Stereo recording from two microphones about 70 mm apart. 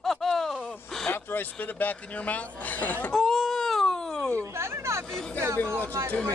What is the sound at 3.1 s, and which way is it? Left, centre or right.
Wail, centre.